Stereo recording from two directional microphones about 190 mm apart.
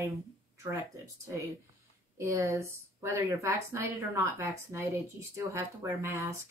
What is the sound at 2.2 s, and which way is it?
Speech, 15° right (ahead or behind).